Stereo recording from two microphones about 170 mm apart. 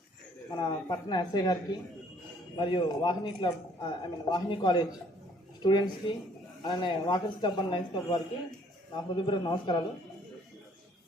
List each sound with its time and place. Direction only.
0.6 s a man's voice: 25° left (ahead or behind)
2.6 s a man's voice: 25° left (ahead or behind)